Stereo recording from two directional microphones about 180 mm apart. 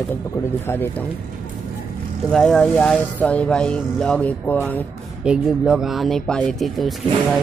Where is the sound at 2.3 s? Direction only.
5° left (ahead or behind).